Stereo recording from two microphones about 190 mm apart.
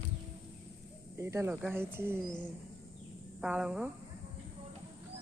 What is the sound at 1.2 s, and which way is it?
Speech, 15° right (ahead or behind).